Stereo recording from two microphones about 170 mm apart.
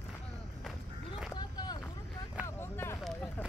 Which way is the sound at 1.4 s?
25° left (ahead or behind).